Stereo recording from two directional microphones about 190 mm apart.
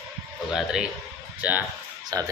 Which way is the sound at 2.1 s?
20° right (ahead or behind).